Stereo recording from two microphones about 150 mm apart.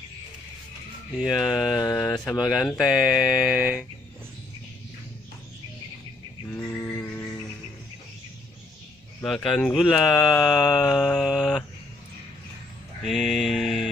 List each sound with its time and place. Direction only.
1.2 s speech: 5° right (ahead or behind)
6.4 s a sound: 15° left (ahead or behind)
7.0 s music: 15° left (ahead or behind)
9.2 s speech: centre (ahead or behind)
13.0 s mantra: centre (ahead or behind)